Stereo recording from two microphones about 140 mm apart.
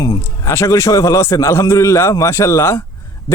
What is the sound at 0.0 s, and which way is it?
Speech, 20° left (ahead or behind).